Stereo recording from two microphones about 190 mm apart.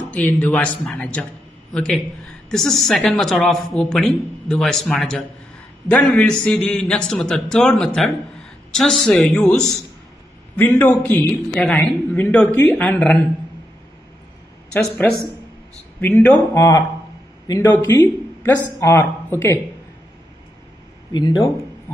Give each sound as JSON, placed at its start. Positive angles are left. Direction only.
{"t": 0.1, "sound": "a man's voice", "side_deg": 5}
{"t": 14.7, "sound": "a man's voice", "side_deg": 5}
{"t": 21.1, "sound": "speech", "side_deg": 20}